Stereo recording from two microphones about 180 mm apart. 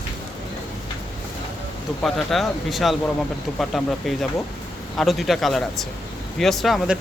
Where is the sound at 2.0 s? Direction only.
Centre (ahead or behind).